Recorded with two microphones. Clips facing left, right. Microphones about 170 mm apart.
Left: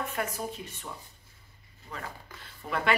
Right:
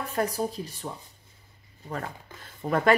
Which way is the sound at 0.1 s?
35° right (ahead or behind).